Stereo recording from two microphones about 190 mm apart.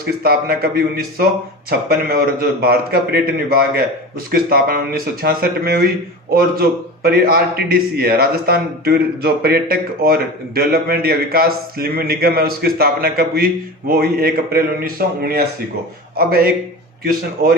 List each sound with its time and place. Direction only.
0.0 s a man's voice: 50° right (ahead or behind)